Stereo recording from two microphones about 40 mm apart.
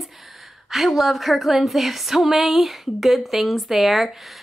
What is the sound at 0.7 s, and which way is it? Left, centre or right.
A woman's voice, centre.